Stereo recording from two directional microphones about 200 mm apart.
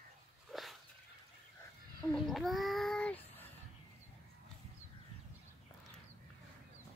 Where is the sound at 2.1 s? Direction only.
Centre (ahead or behind).